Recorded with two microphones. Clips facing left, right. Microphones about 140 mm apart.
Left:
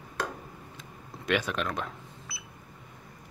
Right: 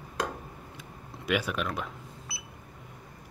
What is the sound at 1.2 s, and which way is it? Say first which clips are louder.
Speech: even; 5° right (ahead or behind).